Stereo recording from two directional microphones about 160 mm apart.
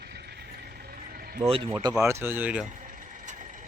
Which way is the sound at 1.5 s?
35° right (ahead or behind).